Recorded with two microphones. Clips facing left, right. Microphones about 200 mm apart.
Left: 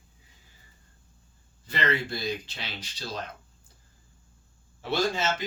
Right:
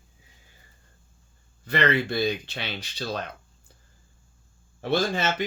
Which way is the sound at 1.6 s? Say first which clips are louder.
Right 5 dB; 65° right (ahead or behind).